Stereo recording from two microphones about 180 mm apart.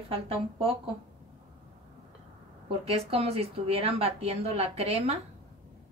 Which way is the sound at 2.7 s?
35° right (ahead or behind).